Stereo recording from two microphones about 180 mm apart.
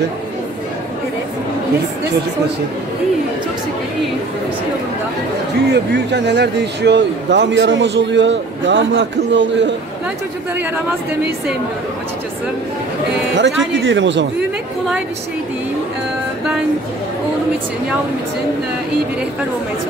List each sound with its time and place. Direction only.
5.7 s speech: 70° right (ahead or behind); by 9.8 s 90° right
13.4 s speech: 90° right